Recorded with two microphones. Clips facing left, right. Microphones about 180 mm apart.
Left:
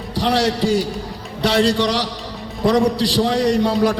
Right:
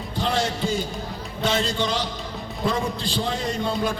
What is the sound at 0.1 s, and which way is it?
A man's voice, 85° left.